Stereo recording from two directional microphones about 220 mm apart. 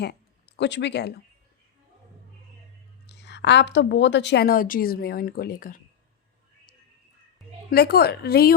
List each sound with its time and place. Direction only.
0.0 s speech: 45° left (ahead or behind)
3.1 s a woman's voice: 50° left (ahead or behind)
7.7 s a woman's voice: 45° left (ahead or behind)